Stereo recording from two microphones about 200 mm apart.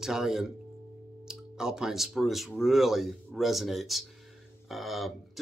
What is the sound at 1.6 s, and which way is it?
Speech, 5° right (ahead or behind).